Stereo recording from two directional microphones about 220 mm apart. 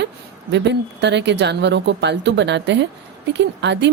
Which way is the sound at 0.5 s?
50° right (ahead or behind).